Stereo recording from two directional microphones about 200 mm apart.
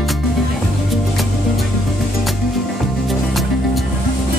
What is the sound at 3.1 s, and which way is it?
Music, centre (ahead or behind).